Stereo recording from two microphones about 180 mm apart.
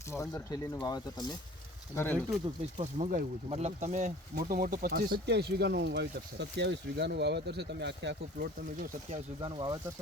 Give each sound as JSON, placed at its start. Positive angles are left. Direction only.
{"t": 0.1, "sound": "speech", "side_deg": 15}
{"t": 2.8, "sound": "speech", "side_deg": -40}
{"t": 4.4, "sound": "speech", "side_deg": -50}
{"t": 9.4, "sound": "speech", "side_deg": -25}